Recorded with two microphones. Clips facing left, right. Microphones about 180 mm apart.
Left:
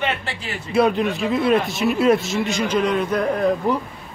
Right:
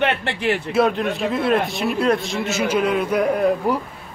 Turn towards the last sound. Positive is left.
turn(degrees=-10)  # may be behind; listen again after turning